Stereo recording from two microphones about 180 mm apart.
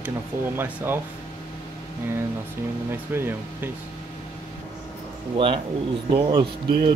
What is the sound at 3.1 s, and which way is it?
Speech, 10° right (ahead or behind).